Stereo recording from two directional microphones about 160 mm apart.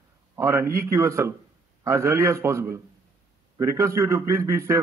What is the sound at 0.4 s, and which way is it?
A man's voice, 20° right (ahead or behind).